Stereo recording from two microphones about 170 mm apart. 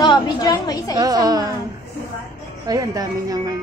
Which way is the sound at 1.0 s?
20° right (ahead or behind).